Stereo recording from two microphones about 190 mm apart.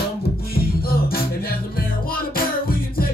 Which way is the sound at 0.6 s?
50° left (ahead or behind).